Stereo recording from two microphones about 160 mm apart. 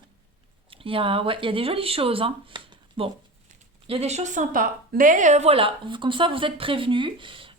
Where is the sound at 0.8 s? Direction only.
35° right (ahead or behind).